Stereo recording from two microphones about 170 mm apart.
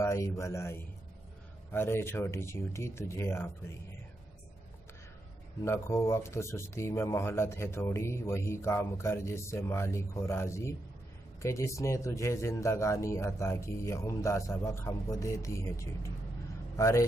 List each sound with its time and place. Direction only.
0.0 s speech: 15° left (ahead or behind)
5.6 s speech: 15° left (ahead or behind)